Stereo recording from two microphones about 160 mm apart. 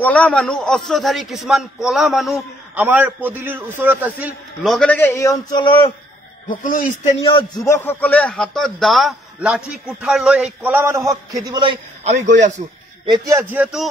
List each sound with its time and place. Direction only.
0.0 s a man's voice: 10° left (ahead or behind); by 4.3 s 10° right (ahead or behind)
4.6 s a man's voice: 5° left (ahead or behind); by 5.9 s 30° left (ahead or behind)
6.5 s speech: 55° left (ahead or behind)
7.2 s a man's voice: 30° left (ahead or behind)
7.6 s a man's voice: 15° left (ahead or behind); by 11.1 s 15° right (ahead or behind)
11.4 s a man's voice: 30° right (ahead or behind)
12.1 s a man's voice: 50° right (ahead or behind)
13.0 s speech: 25° right (ahead or behind); by 13.8 s 5° right (ahead or behind)